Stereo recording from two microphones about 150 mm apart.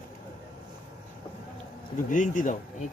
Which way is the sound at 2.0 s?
60° left (ahead or behind).